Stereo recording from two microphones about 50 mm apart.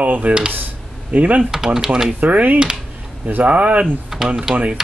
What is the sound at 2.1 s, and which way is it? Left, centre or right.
Speech, right.